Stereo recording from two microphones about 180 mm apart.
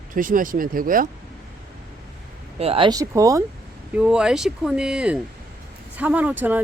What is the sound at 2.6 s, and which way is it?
Speech, 30° right (ahead or behind).